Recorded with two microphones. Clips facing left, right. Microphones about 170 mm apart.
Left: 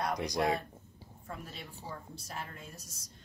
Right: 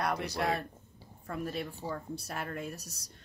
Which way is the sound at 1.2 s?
60° right (ahead or behind).